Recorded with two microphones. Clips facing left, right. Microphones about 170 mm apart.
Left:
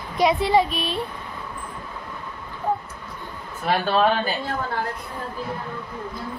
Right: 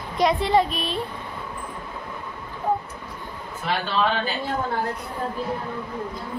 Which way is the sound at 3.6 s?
50° left (ahead or behind).